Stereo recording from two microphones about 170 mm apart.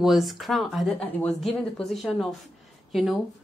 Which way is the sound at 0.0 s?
Centre (ahead or behind).